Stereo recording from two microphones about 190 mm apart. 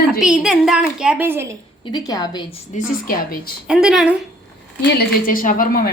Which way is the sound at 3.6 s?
5° right (ahead or behind).